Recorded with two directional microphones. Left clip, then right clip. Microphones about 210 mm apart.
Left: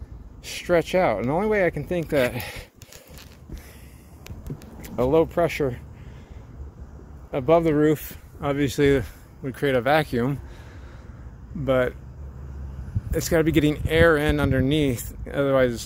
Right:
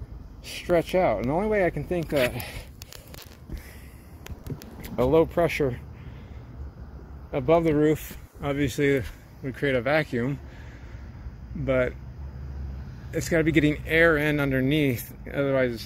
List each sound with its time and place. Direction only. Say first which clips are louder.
0.7 s speech: left 2 dB; 15° left (ahead or behind)
2.0 s speech: left 2 dB; 35° left (ahead or behind)
4.8 s speech: left 1 dB; 5° left (ahead or behind)
7.2 s speech: left 2 dB; 10° left (ahead or behind)
11.6 s speech: left 3 dB; 10° left (ahead or behind)
13.1 s speech: left 2 dB; 15° left (ahead or behind)